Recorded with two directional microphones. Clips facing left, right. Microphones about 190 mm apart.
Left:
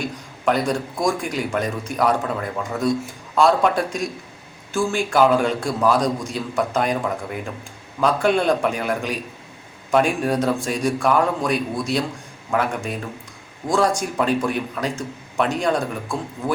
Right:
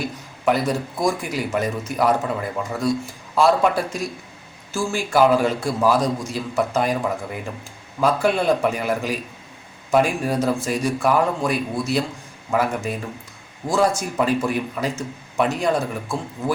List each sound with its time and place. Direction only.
0.0 s a man's voice: 5° right (ahead or behind)